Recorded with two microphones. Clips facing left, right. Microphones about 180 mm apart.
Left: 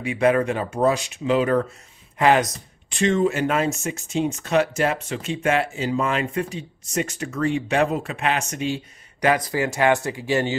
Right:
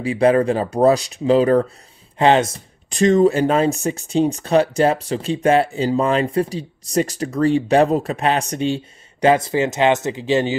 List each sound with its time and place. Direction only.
0.0 s speech: 30° right (ahead or behind)
2.9 s speech: 40° right (ahead or behind); by 10.5 s 20° right (ahead or behind)